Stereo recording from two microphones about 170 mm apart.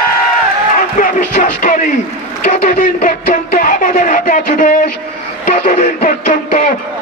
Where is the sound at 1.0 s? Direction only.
50° left (ahead or behind).